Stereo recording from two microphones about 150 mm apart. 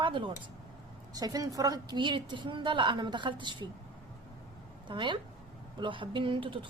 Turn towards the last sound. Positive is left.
turn(degrees=-35)  # may be behind; listen again after turning